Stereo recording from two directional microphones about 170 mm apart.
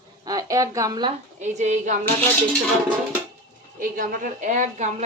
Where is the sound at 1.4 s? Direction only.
45° right (ahead or behind).